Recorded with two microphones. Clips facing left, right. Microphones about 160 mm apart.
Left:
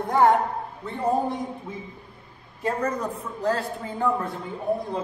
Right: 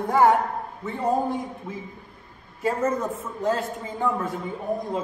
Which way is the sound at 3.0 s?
5° right (ahead or behind).